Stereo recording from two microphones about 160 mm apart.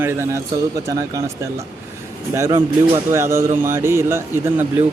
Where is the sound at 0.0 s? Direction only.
15° right (ahead or behind).